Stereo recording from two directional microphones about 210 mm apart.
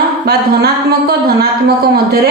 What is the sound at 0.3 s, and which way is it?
Speech, 50° right (ahead or behind).